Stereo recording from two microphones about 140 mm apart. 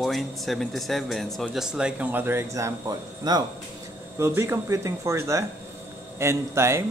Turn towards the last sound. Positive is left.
turn(degrees=-20)  # may be behind; listen again after turning